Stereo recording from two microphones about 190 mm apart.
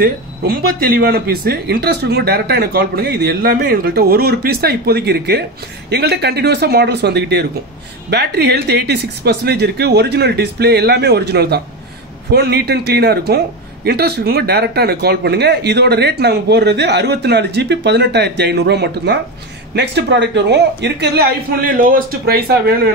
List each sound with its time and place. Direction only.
0.0 s speech: 50° right (ahead or behind)